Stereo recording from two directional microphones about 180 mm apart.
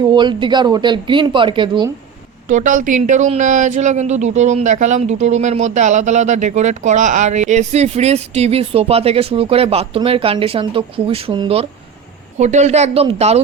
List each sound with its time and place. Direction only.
0.0 s speech: 25° right (ahead or behind)
2.5 s speech: 45° right (ahead or behind)